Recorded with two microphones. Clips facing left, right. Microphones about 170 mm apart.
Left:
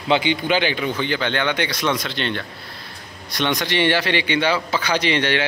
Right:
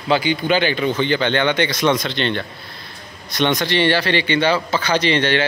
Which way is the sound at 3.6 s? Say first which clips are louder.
Right 2 dB; 15° left (ahead or behind).